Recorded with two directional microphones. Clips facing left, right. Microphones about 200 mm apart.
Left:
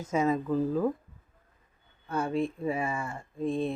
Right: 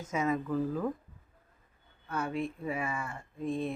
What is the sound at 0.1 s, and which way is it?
Speech, 30° left (ahead or behind).